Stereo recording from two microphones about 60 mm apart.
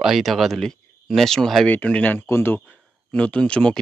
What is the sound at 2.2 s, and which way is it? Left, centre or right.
Speech, left.